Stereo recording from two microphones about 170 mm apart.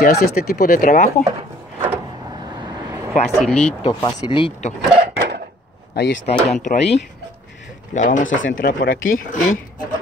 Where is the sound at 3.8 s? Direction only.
30° left (ahead or behind).